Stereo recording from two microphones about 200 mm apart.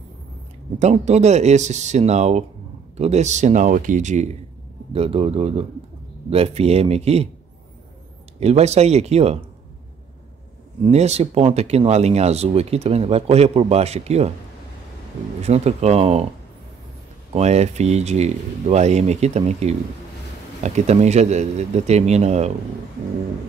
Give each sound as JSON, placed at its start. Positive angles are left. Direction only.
{"t": 0.7, "sound": "speech", "side_deg": -35}
{"t": 8.4, "sound": "speech", "side_deg": -30}
{"t": 10.8, "sound": "speech", "side_deg": -35}
{"t": 15.4, "sound": "speech", "side_deg": -35}
{"t": 17.3, "sound": "speech", "side_deg": -35}